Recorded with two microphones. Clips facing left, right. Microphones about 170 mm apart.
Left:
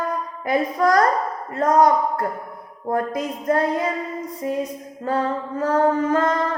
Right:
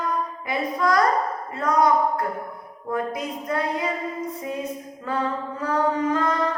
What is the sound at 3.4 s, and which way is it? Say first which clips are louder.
Speech: left 6 dB; 45° left (ahead or behind).